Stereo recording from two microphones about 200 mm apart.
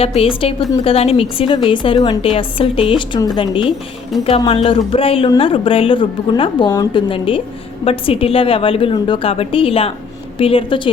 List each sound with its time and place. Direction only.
0.0 s a woman's voice: 30° left (ahead or behind)